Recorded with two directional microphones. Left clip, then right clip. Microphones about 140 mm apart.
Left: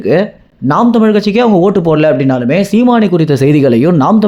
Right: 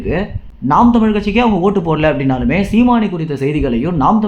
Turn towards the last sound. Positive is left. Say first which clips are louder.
# left 4 dB
turn(degrees=60)  # may be behind; listen again after turning